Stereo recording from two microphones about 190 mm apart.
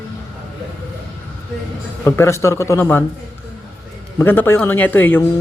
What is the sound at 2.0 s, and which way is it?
Speech, 15° left (ahead or behind).